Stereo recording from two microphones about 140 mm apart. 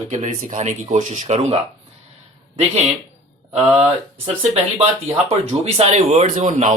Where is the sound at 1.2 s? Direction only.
50° right (ahead or behind).